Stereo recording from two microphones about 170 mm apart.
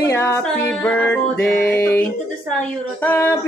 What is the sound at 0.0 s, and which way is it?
Music, 15° left (ahead or behind).